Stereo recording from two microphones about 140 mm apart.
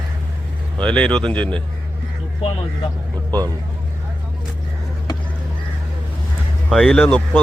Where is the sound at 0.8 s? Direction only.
5° left (ahead or behind).